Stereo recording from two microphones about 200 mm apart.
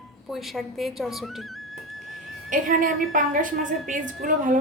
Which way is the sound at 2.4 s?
40° right (ahead or behind).